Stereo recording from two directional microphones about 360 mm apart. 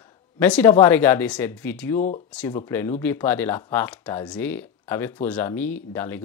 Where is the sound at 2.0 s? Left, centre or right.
Left.